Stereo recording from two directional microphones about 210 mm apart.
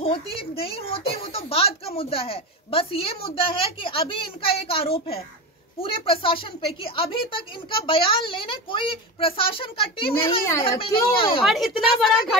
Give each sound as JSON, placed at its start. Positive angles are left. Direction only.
{"t": 0.0, "sound": "a woman's voice", "side_deg": 25}
{"t": 11.4, "sound": "a woman's voice", "side_deg": 0}